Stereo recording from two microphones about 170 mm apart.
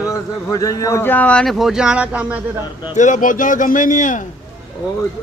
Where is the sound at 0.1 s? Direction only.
20° left (ahead or behind); by 2.4 s 5° right (ahead or behind).